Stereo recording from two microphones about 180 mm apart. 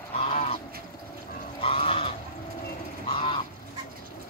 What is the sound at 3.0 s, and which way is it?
Goose, 30° left (ahead or behind).